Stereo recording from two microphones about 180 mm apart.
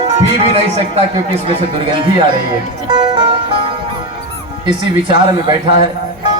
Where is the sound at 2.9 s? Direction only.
25° right (ahead or behind).